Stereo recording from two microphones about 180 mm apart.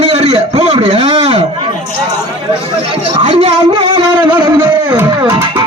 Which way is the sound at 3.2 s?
30° right (ahead or behind).